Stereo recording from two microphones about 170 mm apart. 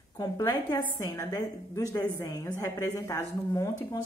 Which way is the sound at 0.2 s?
25° left (ahead or behind).